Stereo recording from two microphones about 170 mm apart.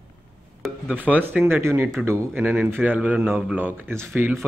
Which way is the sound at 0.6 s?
10° right (ahead or behind).